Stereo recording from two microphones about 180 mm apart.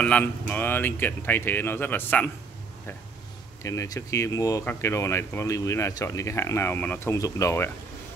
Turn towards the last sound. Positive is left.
turn(degrees=15)  # may be behind; listen again after turning